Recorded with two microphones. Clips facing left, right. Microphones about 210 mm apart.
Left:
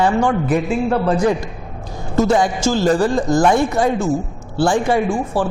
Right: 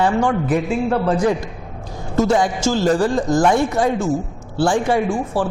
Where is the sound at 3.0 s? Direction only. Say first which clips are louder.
Left 1 dB; 25° left (ahead or behind).